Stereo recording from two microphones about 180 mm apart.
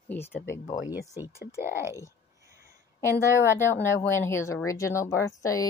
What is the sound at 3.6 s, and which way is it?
Speech, 15° left (ahead or behind).